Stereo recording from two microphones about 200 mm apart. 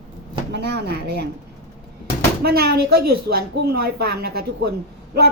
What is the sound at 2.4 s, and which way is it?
Speech, 50° right (ahead or behind).